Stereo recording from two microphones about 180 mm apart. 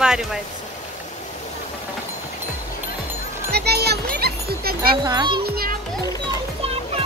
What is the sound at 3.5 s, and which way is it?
Music, 65° right (ahead or behind).